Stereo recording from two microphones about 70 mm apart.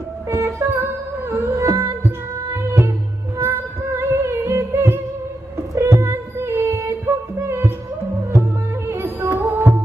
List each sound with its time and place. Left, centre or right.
0.3 s music: right